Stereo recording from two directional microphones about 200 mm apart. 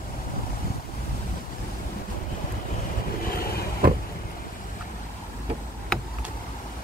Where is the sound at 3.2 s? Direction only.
50° left (ahead or behind).